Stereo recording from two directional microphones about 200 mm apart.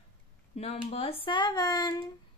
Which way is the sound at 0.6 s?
30° left (ahead or behind).